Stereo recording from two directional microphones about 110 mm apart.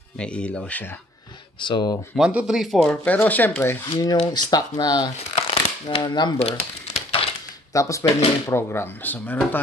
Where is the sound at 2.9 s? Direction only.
15° left (ahead or behind).